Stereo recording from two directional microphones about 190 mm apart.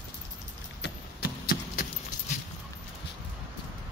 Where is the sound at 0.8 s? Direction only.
55° left (ahead or behind).